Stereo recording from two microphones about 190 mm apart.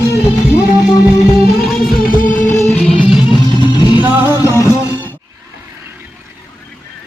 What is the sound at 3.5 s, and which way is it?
Music, 25° left (ahead or behind).